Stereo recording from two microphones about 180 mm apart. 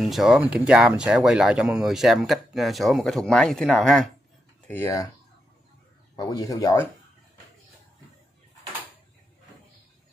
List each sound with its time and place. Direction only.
0.0 s speech: centre (ahead or behind)
4.6 s speech: 15° left (ahead or behind)
6.1 s speech: 20° left (ahead or behind)